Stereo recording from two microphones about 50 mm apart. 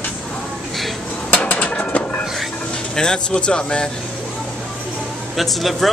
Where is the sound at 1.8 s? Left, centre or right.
Left.